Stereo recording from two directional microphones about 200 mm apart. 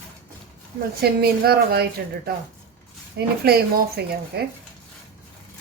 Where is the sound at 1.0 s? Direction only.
50° right (ahead or behind).